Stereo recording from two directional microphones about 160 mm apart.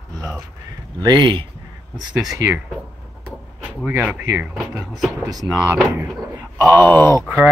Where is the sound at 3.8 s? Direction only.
5° right (ahead or behind).